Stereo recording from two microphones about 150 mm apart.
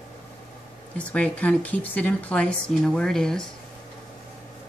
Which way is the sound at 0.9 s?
10° left (ahead or behind).